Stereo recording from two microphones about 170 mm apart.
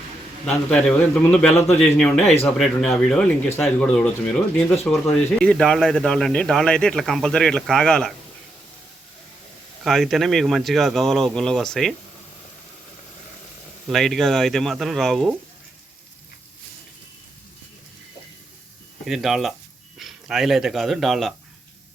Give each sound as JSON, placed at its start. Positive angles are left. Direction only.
{"t": 0.4, "sound": "speech", "side_deg": 5}
{"t": 9.8, "sound": "speech", "side_deg": 0}
{"t": 13.8, "sound": "speech", "side_deg": 0}
{"t": 19.0, "sound": "speech", "side_deg": 0}